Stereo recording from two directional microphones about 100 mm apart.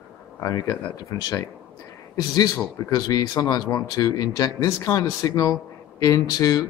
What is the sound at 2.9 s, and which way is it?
Speech, 40° left (ahead or behind).